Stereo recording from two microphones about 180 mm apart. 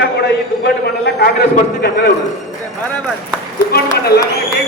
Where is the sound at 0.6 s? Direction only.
60° left (ahead or behind).